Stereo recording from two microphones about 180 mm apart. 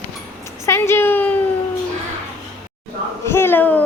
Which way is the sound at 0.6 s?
15° left (ahead or behind).